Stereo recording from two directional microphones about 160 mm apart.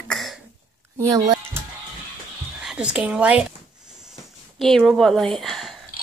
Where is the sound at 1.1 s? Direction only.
20° right (ahead or behind).